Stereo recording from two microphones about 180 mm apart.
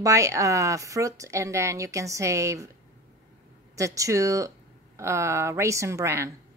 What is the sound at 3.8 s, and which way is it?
Speech, 15° right (ahead or behind).